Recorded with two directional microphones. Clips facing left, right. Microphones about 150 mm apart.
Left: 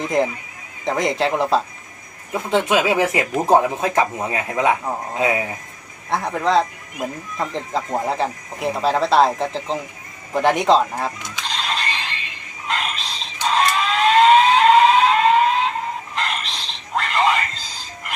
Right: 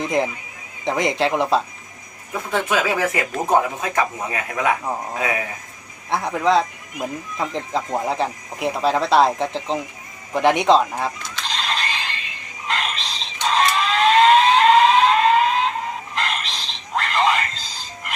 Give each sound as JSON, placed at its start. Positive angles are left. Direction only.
{"t": 0.0, "sound": "speech", "side_deg": 0}
{"t": 2.3, "sound": "speech", "side_deg": 25}
{"t": 6.1, "sound": "speech", "side_deg": 0}
{"t": 11.4, "sound": "a sound", "side_deg": 0}
{"t": 12.6, "sound": "fire alarm", "side_deg": 0}
{"t": 16.1, "sound": "a sound", "side_deg": 0}